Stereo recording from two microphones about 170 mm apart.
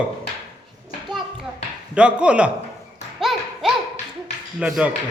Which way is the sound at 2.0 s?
5° right (ahead or behind).